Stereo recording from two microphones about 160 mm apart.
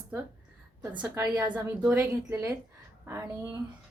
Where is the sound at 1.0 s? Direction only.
10° right (ahead or behind).